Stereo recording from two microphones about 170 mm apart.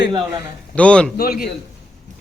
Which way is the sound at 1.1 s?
60° left (ahead or behind).